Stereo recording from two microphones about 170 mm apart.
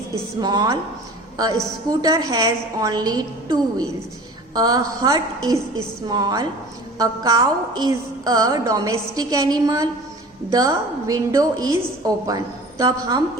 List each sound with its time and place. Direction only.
0.4 s a woman's voice: 25° right (ahead or behind)